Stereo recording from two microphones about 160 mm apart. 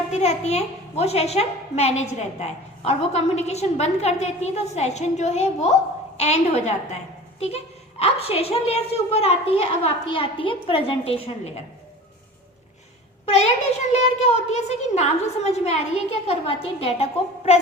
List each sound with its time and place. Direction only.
0.1 s a woman's voice: 45° left (ahead or behind)
13.2 s a child's voice: 45° left (ahead or behind)